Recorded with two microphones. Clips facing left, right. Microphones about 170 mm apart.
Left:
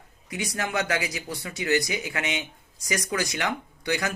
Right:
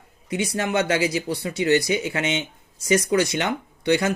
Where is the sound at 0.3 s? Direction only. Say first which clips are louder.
Right 6 dB; 25° right (ahead or behind).